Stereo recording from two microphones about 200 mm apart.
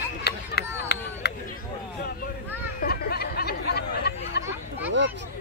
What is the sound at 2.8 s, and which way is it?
Chatter, 50° left (ahead or behind).